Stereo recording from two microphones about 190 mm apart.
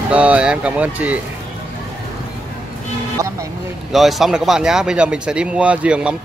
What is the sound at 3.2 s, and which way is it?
Speech, 15° right (ahead or behind).